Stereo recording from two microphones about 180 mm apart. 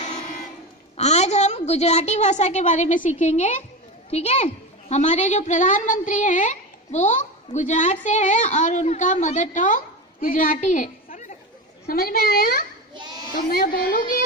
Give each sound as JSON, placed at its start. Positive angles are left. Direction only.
{"t": 0.9, "sound": "a woman's voice", "side_deg": 40}
{"t": 11.8, "sound": "a woman's voice", "side_deg": 60}
{"t": 12.9, "sound": "children playing", "side_deg": -25}
{"t": 13.3, "sound": "speech", "side_deg": 50}